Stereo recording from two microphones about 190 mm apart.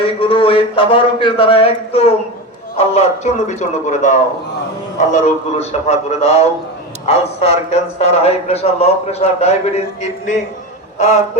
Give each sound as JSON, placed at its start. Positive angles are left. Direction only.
{"t": 0.0, "sound": "a man's voice", "side_deg": 30}